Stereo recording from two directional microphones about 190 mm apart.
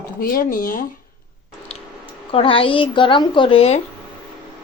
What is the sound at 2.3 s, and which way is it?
A woman's voice, 30° left (ahead or behind).